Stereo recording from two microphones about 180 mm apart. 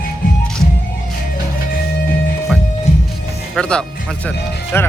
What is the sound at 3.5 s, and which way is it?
Speech, 5° left (ahead or behind).